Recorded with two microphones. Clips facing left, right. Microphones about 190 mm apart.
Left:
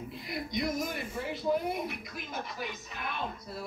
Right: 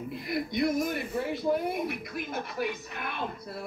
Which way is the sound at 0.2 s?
55° right (ahead or behind).